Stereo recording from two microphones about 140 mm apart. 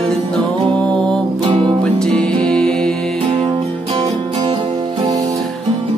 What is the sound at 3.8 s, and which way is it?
Music, 45° right (ahead or behind).